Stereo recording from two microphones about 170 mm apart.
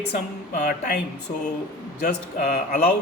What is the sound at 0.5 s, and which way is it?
Speech, 50° left (ahead or behind).